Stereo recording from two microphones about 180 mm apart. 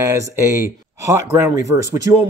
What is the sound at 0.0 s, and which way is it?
Speech, 15° right (ahead or behind).